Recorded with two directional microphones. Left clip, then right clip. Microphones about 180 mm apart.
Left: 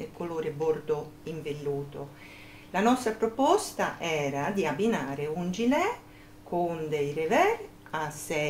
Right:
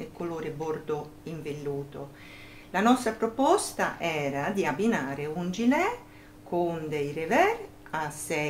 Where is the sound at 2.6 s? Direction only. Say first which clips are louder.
Right 1 dB; 20° right (ahead or behind).